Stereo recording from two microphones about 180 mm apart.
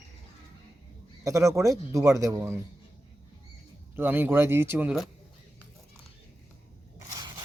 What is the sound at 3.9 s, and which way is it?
A man's voice, 10° right (ahead or behind).